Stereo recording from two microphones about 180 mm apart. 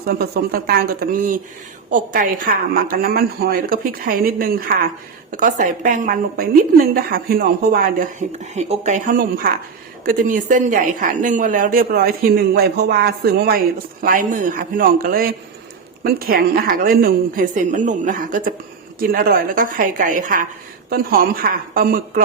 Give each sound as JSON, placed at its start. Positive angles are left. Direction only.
{"t": 0.0, "sound": "a woman's voice", "side_deg": -60}
{"t": 8.5, "sound": "a woman's voice", "side_deg": -40}